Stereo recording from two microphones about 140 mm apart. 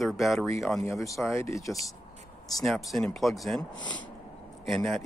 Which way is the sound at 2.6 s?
Centre (ahead or behind).